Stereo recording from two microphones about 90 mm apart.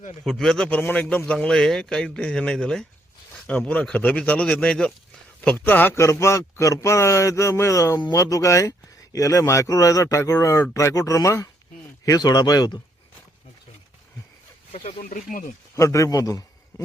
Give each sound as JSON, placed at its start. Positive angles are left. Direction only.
{"t": 0.3, "sound": "a man's voice", "side_deg": 5}
{"t": 5.9, "sound": "a man's voice", "side_deg": 30}
{"t": 15.7, "sound": "a man's voice", "side_deg": 35}